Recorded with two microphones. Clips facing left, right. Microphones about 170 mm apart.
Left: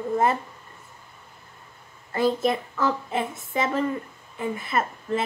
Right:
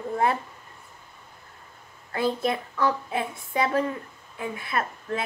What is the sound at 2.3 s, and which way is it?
A child's voice, 25° left (ahead or behind).